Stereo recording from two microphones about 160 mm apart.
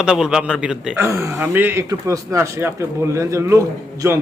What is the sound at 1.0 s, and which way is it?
A man's voice, 15° right (ahead or behind).